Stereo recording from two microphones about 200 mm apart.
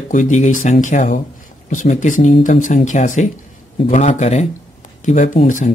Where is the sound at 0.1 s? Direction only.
40° left (ahead or behind).